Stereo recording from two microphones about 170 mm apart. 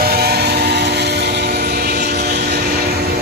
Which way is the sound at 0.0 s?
65° right (ahead or behind).